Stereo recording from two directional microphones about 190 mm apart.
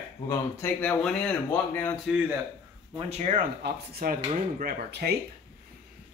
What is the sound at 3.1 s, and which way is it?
Speech, 40° right (ahead or behind).